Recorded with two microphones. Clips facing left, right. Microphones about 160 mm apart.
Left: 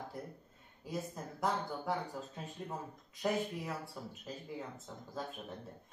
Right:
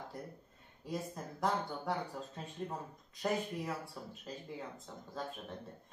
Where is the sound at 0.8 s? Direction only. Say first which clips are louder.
Even; centre (ahead or behind).